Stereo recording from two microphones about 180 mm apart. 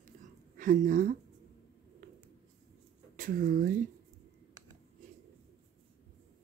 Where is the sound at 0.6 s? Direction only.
45° right (ahead or behind).